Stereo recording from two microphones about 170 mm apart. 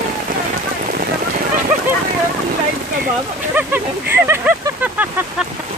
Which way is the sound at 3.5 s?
10° right (ahead or behind).